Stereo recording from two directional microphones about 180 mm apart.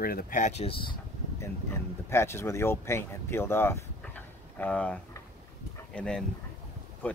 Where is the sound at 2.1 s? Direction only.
15° left (ahead or behind).